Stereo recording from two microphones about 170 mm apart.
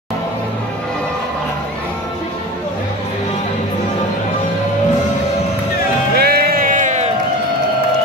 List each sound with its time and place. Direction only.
6.1 s music: 65° right (ahead or behind); by 7.1 s 45° right (ahead or behind)